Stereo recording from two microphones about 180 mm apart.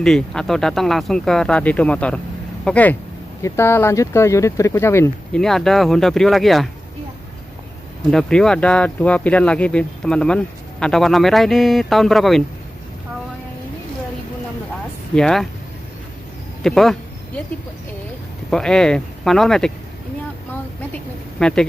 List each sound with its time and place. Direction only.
0.0 s speech: 5° left (ahead or behind)
5.4 s speech: centre (ahead or behind)
8.1 s speech: 5° left (ahead or behind)
15.1 s speech: 5° left (ahead or behind)
16.6 s speech: centre (ahead or behind)
18.5 s speech: 5° left (ahead or behind)
20.9 s a sound: 5° left (ahead or behind)